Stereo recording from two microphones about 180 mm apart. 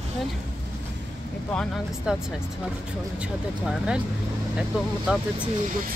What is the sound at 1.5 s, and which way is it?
Speech, centre (ahead or behind).